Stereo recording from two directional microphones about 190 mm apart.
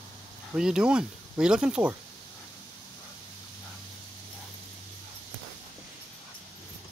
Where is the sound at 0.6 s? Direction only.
5° right (ahead or behind).